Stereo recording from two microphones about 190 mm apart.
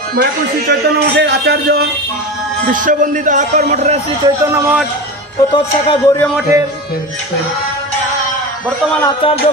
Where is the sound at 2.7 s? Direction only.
45° right (ahead or behind).